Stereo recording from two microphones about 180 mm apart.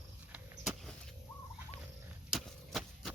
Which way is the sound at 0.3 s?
10° right (ahead or behind).